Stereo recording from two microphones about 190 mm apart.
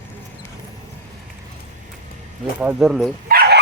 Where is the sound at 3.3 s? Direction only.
55° right (ahead or behind).